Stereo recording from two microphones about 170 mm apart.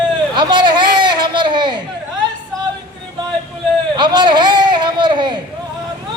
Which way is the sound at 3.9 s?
25° right (ahead or behind).